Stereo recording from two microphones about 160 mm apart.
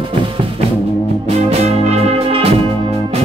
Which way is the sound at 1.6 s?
40° right (ahead or behind).